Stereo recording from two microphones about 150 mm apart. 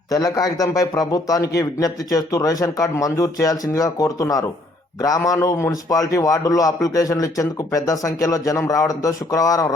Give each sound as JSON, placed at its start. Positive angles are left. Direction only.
{"t": 0.1, "sound": "a man's voice", "side_deg": 25}